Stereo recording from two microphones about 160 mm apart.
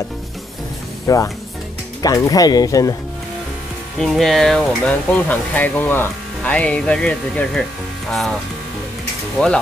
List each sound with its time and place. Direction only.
1.0 s speech: 20° left (ahead or behind)
4.0 s speech: centre (ahead or behind)
9.4 s speech: centre (ahead or behind)